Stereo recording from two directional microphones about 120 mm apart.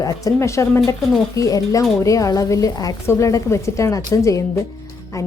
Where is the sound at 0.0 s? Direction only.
25° left (ahead or behind).